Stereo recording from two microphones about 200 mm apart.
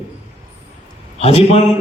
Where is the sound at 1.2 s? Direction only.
30° left (ahead or behind).